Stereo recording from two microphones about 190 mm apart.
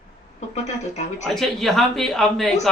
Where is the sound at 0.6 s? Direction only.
35° left (ahead or behind).